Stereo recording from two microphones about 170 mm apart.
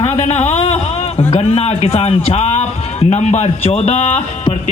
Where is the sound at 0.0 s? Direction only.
40° left (ahead or behind).